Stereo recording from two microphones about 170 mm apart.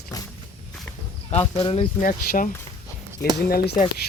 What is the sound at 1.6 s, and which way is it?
Speech, 35° left (ahead or behind).